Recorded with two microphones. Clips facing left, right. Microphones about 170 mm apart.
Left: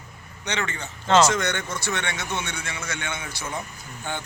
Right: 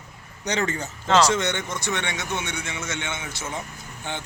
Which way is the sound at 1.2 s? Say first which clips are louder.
Even; 25° right (ahead or behind).